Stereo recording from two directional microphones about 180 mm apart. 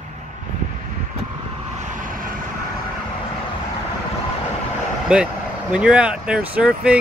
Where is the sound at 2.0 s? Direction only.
50° right (ahead or behind).